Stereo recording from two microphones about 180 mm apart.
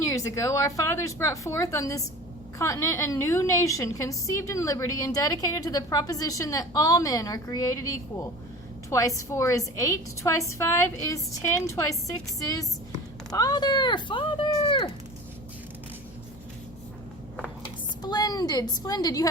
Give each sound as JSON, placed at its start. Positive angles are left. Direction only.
{"t": 0.0, "sound": "a woman's voice", "side_deg": 15}
{"t": 18.0, "sound": "a woman's voice", "side_deg": 20}